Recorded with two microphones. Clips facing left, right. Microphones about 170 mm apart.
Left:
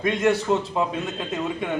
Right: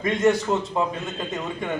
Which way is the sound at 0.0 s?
Centre (ahead or behind).